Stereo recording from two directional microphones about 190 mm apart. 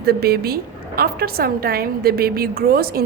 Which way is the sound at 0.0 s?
55° right (ahead or behind).